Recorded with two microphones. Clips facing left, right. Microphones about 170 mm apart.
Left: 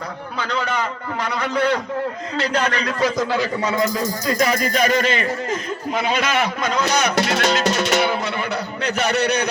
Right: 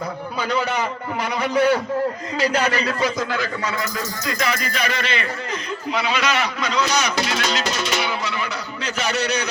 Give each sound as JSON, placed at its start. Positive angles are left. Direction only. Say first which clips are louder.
{"t": 0.3, "sound": "a man's voice", "louder": "right 1 dB", "side_deg": -10}
{"t": 4.3, "sound": "a man's voice", "louder": "left 5 dB", "side_deg": 40}